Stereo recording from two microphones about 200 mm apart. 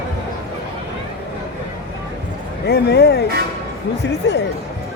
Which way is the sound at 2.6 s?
55° left (ahead or behind).